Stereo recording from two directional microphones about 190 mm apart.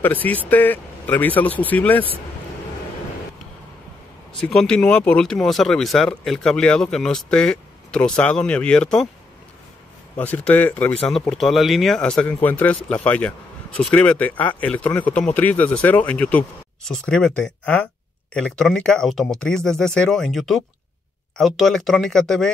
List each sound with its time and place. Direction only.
0.0 s speech: 10° left (ahead or behind)
4.6 s speech: 5° left (ahead or behind)
10.1 s speech: 10° left (ahead or behind)